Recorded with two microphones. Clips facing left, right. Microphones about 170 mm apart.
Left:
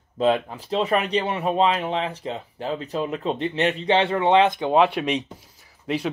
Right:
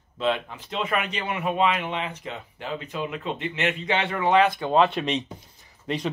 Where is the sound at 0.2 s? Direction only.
40° left (ahead or behind).